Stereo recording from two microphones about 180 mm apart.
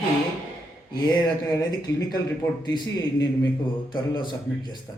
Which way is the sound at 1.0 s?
20° left (ahead or behind).